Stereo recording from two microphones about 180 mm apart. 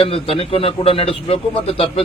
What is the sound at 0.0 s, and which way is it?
A man's voice, 30° left (ahead or behind).